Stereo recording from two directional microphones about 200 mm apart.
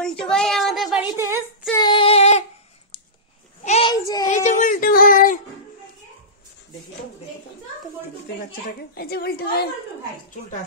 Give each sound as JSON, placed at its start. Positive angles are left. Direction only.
{"t": 0.0, "sound": "a sound", "side_deg": 5}
{"t": 1.0, "sound": "a woman's voice", "side_deg": -15}
{"t": 1.8, "sound": "child singing", "side_deg": 25}
{"t": 3.6, "sound": "a child's voice", "side_deg": 30}
{"t": 3.9, "sound": "child singing", "side_deg": 20}
{"t": 4.3, "sound": "speech", "side_deg": 40}
{"t": 8.9, "sound": "a woman's voice", "side_deg": 50}